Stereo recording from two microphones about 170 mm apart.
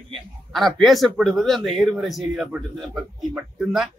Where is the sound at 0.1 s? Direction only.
Centre (ahead or behind).